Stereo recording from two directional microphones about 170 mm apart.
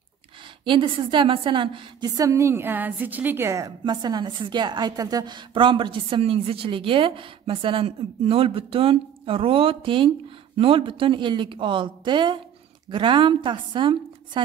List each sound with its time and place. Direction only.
0.7 s a woman's voice: 30° right (ahead or behind)